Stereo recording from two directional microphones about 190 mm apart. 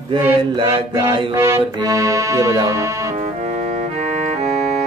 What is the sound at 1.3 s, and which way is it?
Accordion, 15° right (ahead or behind).